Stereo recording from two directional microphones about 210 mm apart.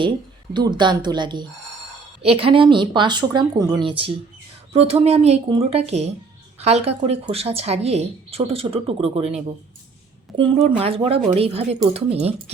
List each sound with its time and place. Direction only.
0.5 s a woman's voice: 20° right (ahead or behind)